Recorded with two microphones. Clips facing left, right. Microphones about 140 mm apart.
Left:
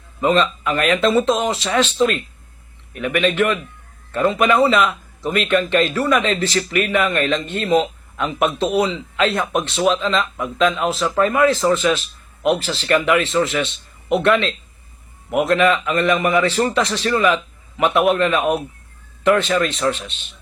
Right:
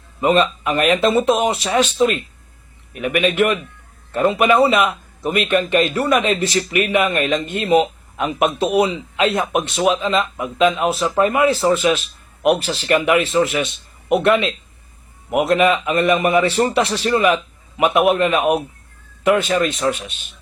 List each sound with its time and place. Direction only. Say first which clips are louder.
0.2 s speech: right 1 dB; 15° right (ahead or behind)
15.4 s speech: right 1 dB; 20° right (ahead or behind)
16.1 s a man's voice: right 2 dB; 25° right (ahead or behind)
16.4 s speech: right 1 dB; 15° right (ahead or behind)
17.3 s a sound: right 1 dB; 15° right (ahead or behind)
18.2 s speech: right 1 dB; 15° right (ahead or behind)